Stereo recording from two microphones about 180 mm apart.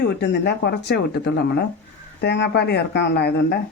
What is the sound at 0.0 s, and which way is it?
Speech, 65° left (ahead or behind).